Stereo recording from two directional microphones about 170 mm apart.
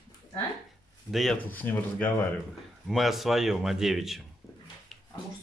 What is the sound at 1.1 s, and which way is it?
Speech, centre (ahead or behind).